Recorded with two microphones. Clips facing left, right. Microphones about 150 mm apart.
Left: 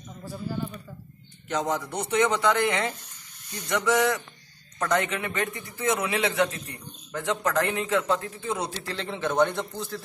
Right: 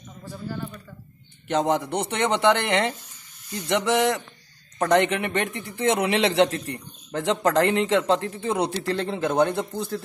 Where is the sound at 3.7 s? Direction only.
25° right (ahead or behind).